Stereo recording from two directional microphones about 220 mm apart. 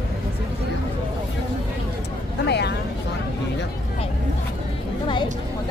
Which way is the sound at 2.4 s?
50° left (ahead or behind).